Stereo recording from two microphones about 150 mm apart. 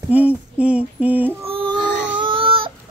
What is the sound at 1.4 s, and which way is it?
Baby cry, 35° right (ahead or behind).